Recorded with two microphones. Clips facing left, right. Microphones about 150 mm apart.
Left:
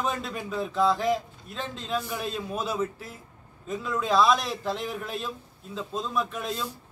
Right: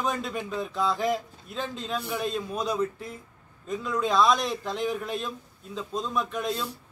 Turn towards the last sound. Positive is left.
turn(degrees=0)  # may be behind; listen again after turning